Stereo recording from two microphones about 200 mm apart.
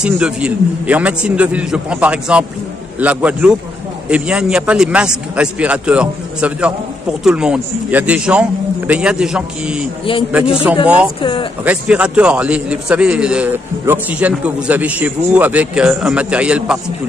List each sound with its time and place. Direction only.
0.0 s a man's voice: 5° right (ahead or behind)
11.1 s speech: 25° left (ahead or behind)
11.6 s a man's voice: 5° right (ahead or behind)